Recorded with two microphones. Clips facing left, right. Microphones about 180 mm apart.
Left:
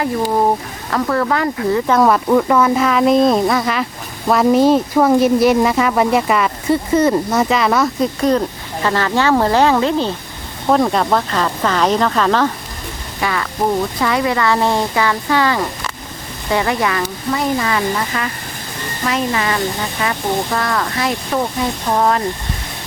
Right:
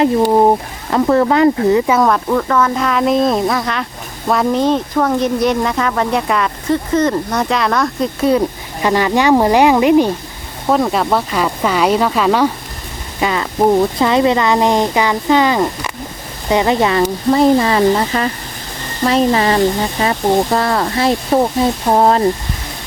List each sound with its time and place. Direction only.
0.0 s speech: 25° right (ahead or behind)
1.9 s speech: centre (ahead or behind); by 10.2 s 15° right (ahead or behind)
10.7 s speech: centre (ahead or behind)
13.1 s speech: 20° right (ahead or behind)